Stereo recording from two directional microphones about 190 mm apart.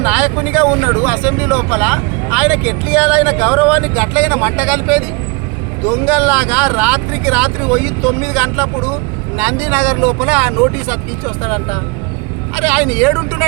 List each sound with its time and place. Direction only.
0.0 s speech: 5° right (ahead or behind)
12.5 s speech: 5° right (ahead or behind)